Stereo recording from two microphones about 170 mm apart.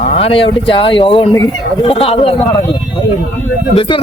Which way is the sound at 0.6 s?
30° left (ahead or behind).